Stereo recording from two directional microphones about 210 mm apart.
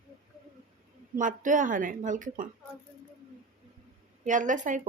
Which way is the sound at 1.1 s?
40° right (ahead or behind).